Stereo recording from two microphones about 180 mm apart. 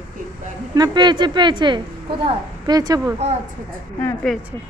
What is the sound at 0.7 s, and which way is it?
A woman's voice, 25° right (ahead or behind).